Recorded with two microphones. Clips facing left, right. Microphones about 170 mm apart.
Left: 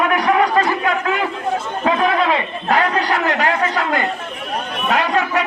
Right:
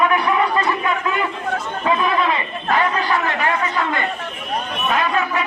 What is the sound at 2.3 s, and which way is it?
A man's voice, 80° left.